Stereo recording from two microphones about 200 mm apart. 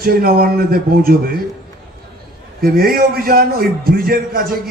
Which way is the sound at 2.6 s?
50° right (ahead or behind).